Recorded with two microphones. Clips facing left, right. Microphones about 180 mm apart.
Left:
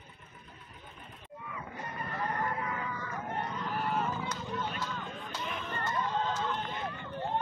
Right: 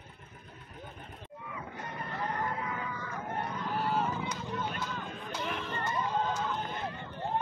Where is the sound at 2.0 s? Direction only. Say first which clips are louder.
Left 1 dB; 15° right (ahead or behind); by 5.0 s centre (ahead or behind).